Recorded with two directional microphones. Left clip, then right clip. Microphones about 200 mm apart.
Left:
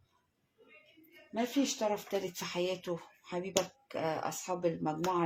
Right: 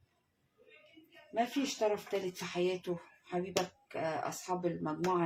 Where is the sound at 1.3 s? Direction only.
35° left (ahead or behind).